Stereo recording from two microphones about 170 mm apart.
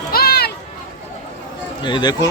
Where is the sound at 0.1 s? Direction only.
65° left (ahead or behind).